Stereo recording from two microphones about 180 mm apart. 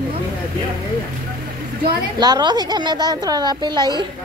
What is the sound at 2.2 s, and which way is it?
A woman's voice, 25° right (ahead or behind).